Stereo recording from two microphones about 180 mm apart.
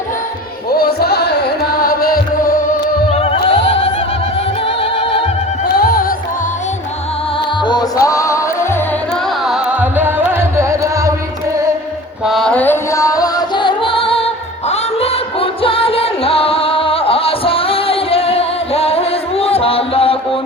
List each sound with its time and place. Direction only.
0.7 s music: 60° left (ahead or behind)
3.1 s music: 30° left (ahead or behind)
3.7 s opera: 35° left (ahead or behind)
4.6 s music: 30° left (ahead or behind)
5.6 s music: 60° left (ahead or behind)
7.6 s music: 25° left (ahead or behind)
9.4 s music: 5° right (ahead or behind)
12.2 s music: centre (ahead or behind); by 20.4 s 30° left (ahead or behind)